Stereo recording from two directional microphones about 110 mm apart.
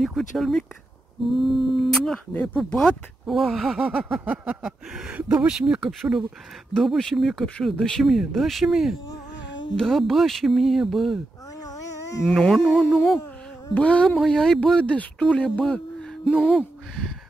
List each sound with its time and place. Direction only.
0.0 s speech: centre (ahead or behind)
1.8 s speech: 5° left (ahead or behind)
2.3 s speech: 15° left (ahead or behind)
2.8 s speech: centre (ahead or behind)
11.6 s a sound: 30° left (ahead or behind)
12.4 s speech: 5° left (ahead or behind)